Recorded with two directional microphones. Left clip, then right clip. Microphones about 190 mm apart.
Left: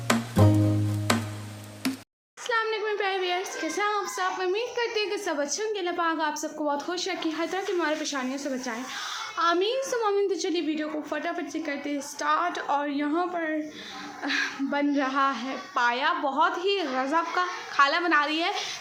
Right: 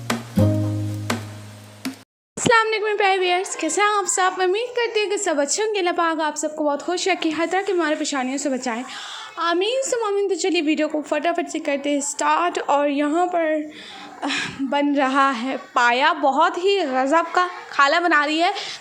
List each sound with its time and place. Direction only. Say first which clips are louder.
2.5 s a woman's voice: right 9 dB; 40° right (ahead or behind)